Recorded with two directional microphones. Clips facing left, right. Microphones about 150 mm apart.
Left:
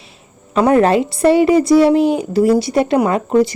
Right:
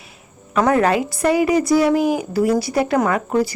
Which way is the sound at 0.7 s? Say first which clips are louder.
Left 5 dB; 25° left (ahead or behind).